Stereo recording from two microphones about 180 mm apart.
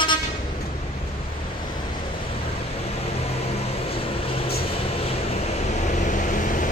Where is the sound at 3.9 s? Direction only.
30° left (ahead or behind); by 6.7 s 45° left (ahead or behind).